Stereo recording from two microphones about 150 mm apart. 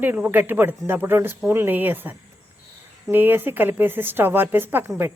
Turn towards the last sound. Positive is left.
turn(degrees=-15)  # may be behind; listen again after turning